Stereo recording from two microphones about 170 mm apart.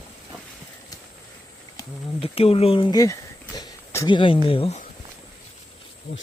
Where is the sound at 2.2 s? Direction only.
35° left (ahead or behind).